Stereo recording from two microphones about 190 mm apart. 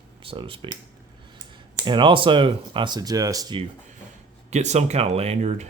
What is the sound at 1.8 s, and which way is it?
Speech, 25° right (ahead or behind).